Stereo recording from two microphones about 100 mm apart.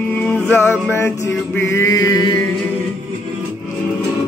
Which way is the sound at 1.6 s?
25° left (ahead or behind).